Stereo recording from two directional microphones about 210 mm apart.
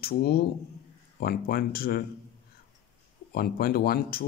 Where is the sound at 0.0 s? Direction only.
50° left (ahead or behind).